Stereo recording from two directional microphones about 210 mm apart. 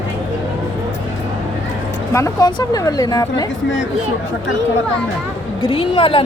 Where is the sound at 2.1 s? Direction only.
15° left (ahead or behind).